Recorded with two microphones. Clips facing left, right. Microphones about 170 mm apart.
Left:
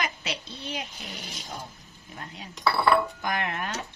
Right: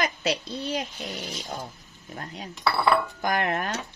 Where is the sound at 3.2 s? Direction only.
45° right (ahead or behind).